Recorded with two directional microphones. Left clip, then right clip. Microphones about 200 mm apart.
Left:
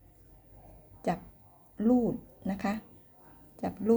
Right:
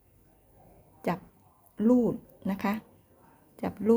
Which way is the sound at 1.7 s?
30° right (ahead or behind).